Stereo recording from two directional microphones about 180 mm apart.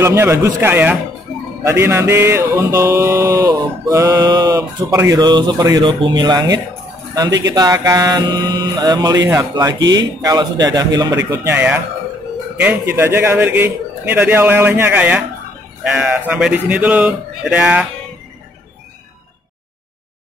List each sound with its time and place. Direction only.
0.0 s a man's voice: 15° right (ahead or behind)
1.6 s music: 15° right (ahead or behind)
7.2 s speech: 80° right
7.5 s music: 20° right (ahead or behind)
11.2 s a man's voice: 15° right (ahead or behind)